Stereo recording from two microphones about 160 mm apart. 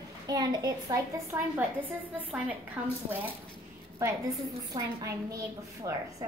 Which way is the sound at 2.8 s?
10° right (ahead or behind).